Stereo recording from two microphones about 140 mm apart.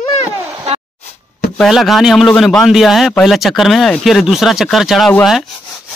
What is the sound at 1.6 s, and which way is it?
A man's voice, centre (ahead or behind).